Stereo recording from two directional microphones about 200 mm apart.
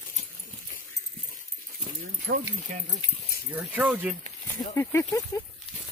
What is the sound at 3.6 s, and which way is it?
Speech, 5° right (ahead or behind).